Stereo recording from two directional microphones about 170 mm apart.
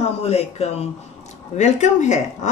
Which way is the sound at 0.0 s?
40° left (ahead or behind).